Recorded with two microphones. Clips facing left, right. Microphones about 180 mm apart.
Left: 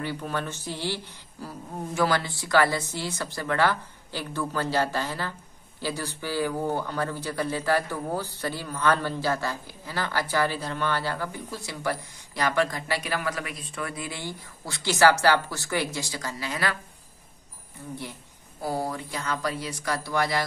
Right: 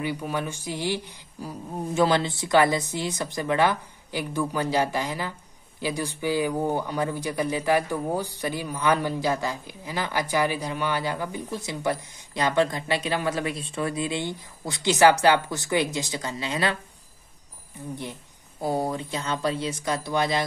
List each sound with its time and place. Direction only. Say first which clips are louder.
0.0 s speech: right 2 dB; 15° right (ahead or behind)
18.6 s speech: right 3 dB; 20° right (ahead or behind)